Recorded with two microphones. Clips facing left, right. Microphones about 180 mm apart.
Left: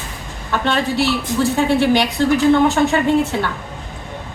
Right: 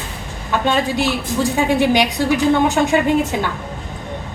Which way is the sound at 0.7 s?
15° right (ahead or behind).